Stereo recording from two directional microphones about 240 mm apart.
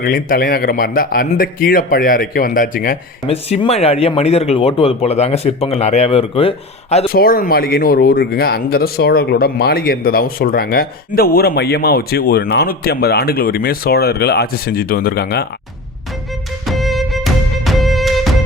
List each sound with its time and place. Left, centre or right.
0.0 s speech: left
3.2 s speech: left
7.1 s speech: left
16.6 s music: centre